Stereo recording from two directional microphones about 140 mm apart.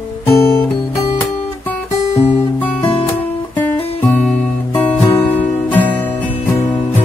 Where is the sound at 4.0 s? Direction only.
10° left (ahead or behind).